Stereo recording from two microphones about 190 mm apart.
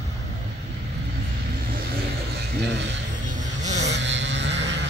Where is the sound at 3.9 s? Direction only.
70° right (ahead or behind).